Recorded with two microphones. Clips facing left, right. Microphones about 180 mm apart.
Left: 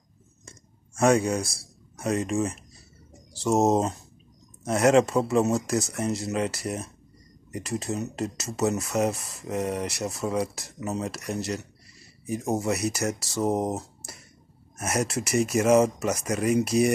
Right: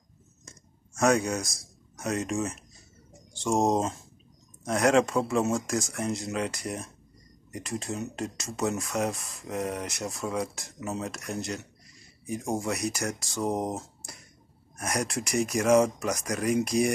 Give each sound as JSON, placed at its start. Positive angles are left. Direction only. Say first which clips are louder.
{"t": 1.0, "sound": "a man's voice", "louder": "left 3 dB", "side_deg": 5}
{"t": 1.4, "sound": "a man's voice", "louder": "left 4 dB", "side_deg": 30}
{"t": 2.0, "sound": "speech", "louder": "left 4 dB", "side_deg": 0}